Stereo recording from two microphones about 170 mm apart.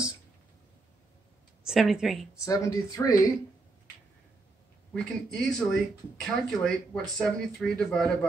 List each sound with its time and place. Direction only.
1.6 s speech: centre (ahead or behind)
2.3 s speech: 20° left (ahead or behind)
4.9 s speech: 5° left (ahead or behind)